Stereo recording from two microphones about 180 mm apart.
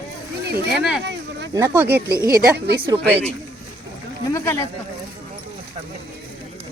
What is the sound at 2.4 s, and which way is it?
Speech, 65° right (ahead or behind).